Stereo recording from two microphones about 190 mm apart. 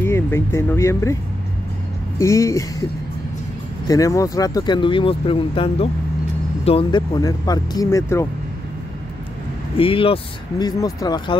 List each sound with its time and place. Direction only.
0.0 s speech: 10° left (ahead or behind)
2.1 s speech: 15° left (ahead or behind)
3.8 s speech: 20° left (ahead or behind)
9.8 s speech: 30° left (ahead or behind)